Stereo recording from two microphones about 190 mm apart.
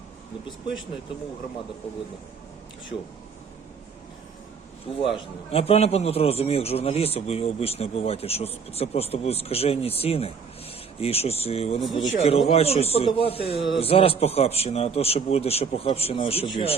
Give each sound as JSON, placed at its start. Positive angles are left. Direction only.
{"t": 4.9, "sound": "a man's voice", "side_deg": 25}